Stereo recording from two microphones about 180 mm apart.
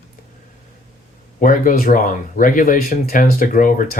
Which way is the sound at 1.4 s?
45° left (ahead or behind).